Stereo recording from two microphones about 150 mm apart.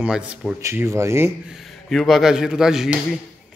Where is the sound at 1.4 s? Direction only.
Centre (ahead or behind).